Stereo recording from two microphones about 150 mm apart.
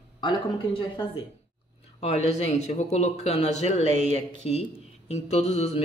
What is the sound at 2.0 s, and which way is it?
Speech, 45° left (ahead or behind).